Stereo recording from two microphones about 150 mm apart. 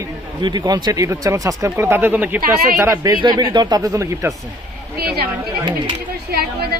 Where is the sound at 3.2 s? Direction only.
30° right (ahead or behind).